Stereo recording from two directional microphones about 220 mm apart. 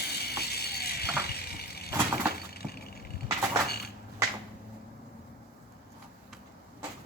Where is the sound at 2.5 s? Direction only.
45° left (ahead or behind).